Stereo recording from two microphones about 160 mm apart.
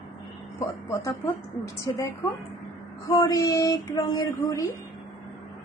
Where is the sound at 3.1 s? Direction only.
20° left (ahead or behind).